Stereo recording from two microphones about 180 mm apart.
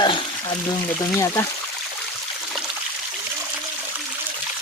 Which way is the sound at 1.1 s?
15° left (ahead or behind).